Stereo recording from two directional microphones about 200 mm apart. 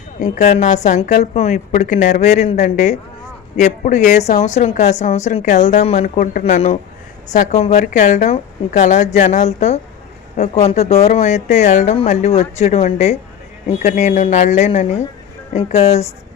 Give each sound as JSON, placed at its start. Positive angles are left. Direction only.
{"t": 0.2, "sound": "a woman's voice", "side_deg": 35}